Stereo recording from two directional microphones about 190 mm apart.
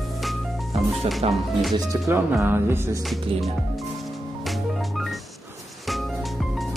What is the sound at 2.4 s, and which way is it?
Music, 15° right (ahead or behind).